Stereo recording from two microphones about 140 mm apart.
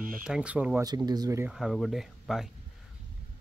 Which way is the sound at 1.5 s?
Centre (ahead or behind).